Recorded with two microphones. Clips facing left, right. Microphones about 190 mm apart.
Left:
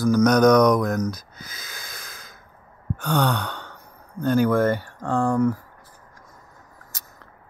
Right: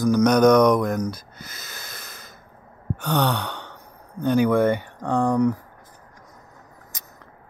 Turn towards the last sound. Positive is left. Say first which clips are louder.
# right 1 dB
turn(degrees=-15)  # may be behind; listen again after turning